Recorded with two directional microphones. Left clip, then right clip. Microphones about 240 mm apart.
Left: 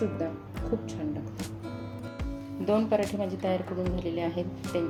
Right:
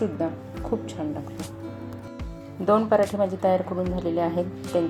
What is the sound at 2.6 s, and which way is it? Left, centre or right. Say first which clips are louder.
Speech: right 6 dB; centre.